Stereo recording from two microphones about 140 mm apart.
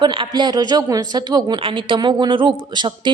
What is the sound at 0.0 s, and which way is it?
A woman's voice, 35° right (ahead or behind).